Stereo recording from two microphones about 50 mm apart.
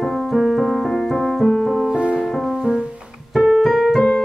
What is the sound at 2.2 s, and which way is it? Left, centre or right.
Music, centre.